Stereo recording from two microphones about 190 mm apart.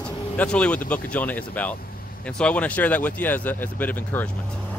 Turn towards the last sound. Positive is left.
turn(degrees=10)  # may be behind; listen again after turning